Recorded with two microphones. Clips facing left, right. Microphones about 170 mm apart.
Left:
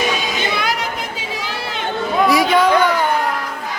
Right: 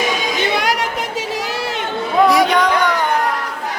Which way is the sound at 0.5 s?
75° right (ahead or behind).